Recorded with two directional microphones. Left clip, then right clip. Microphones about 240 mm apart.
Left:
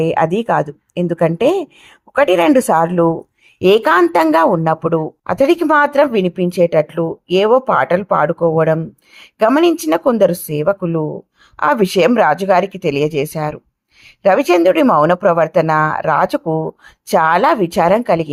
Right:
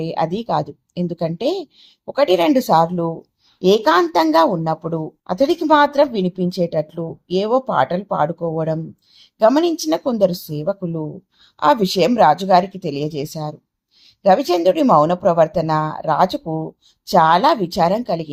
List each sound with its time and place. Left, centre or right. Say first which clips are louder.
0.0 s speech: left 7 dB; left